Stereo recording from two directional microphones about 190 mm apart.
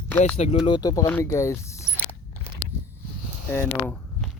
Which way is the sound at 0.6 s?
20° left (ahead or behind).